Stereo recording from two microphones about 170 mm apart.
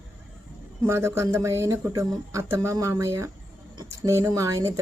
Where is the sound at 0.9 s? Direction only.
15° right (ahead or behind).